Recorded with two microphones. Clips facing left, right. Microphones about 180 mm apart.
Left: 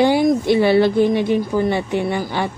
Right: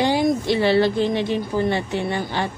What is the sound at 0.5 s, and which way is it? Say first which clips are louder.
Speech: left 4 dB; 15° left (ahead or behind).